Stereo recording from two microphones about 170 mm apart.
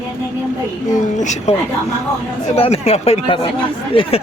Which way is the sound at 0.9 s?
45° left (ahead or behind).